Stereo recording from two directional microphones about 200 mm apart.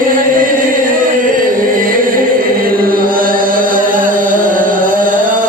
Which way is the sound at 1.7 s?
45° right (ahead or behind).